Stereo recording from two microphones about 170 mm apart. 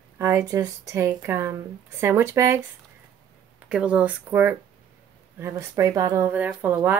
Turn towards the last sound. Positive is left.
turn(degrees=-10)  # may be behind; listen again after turning